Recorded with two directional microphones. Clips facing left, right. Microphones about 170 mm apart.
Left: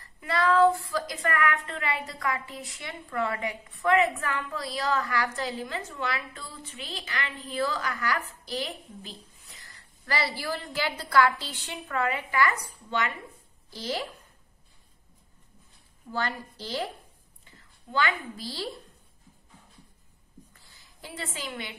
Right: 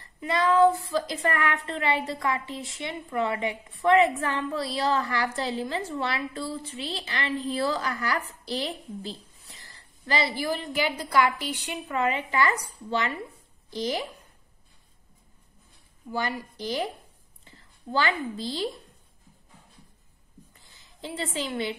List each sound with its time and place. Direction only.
0.2 s a woman's voice: 20° right (ahead or behind)
13.7 s speech: 20° right (ahead or behind)
16.1 s speech: 15° right (ahead or behind)
17.5 s a woman's voice: 30° right (ahead or behind)
20.5 s a sound: 20° right (ahead or behind)